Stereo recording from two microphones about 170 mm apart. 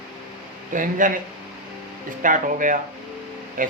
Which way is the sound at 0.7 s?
50° right (ahead or behind).